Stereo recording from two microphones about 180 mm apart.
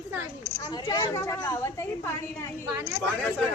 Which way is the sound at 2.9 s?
5° right (ahead or behind).